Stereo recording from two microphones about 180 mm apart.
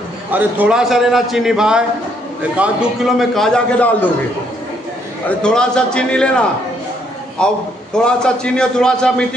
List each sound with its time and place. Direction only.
0.3 s a man's voice: 10° right (ahead or behind); by 4.1 s 5° left (ahead or behind)
5.4 s a man's voice: 5° left (ahead or behind)